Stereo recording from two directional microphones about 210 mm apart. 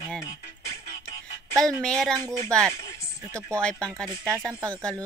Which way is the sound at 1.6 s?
5° left (ahead or behind).